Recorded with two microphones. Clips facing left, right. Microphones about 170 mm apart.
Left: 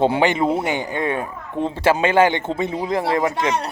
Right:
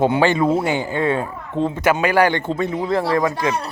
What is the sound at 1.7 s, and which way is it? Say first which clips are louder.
Speech: left 2 dB; 30° left (ahead or behind).